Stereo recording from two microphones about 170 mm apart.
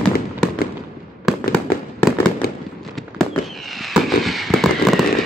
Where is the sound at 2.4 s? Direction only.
65° left (ahead or behind).